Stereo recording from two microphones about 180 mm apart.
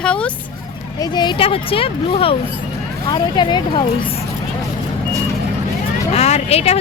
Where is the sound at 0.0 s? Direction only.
5° left (ahead or behind).